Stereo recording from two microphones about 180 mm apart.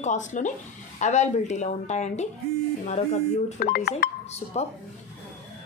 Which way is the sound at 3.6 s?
50° left (ahead or behind).